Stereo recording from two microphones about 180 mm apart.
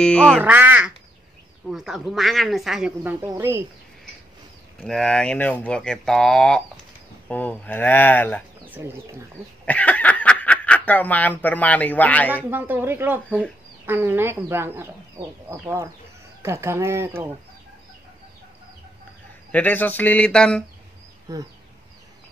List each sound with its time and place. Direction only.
0.0 s speech: 5° left (ahead or behind)
0.4 s speech: 10° right (ahead or behind)
4.8 s speech: 5° left (ahead or behind)
8.6 s speech: 10° right (ahead or behind)
9.7 s speech: 10° left (ahead or behind)
12.4 s speech: 10° right (ahead or behind)
19.5 s speech: 10° left (ahead or behind)
21.3 s a sound: 20° right (ahead or behind)